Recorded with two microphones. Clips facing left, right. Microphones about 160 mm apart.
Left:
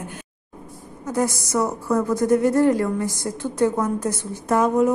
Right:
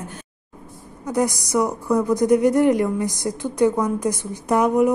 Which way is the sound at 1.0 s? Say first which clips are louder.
Right 1 dB; 15° right (ahead or behind).